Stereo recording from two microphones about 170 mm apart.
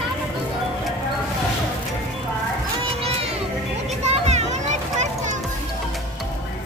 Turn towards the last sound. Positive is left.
turn(degrees=-45)  # may be behind; listen again after turning